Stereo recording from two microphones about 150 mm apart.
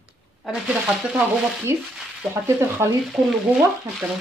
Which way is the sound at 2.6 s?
15° right (ahead or behind).